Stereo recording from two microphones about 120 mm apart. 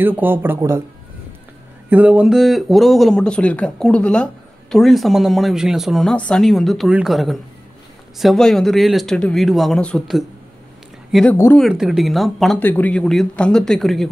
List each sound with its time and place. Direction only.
0.0 s speech: 15° right (ahead or behind)
1.9 s speech: 10° right (ahead or behind); by 10.0 s 5° left (ahead or behind)
11.2 s speech: 20° left (ahead or behind)
11.7 s speech: 5° right (ahead or behind)
12.5 s speech: 15° left (ahead or behind)